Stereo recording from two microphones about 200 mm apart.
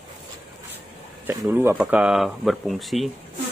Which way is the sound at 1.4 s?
5° right (ahead or behind).